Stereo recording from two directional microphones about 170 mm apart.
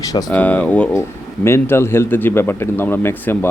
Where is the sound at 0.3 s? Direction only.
10° left (ahead or behind).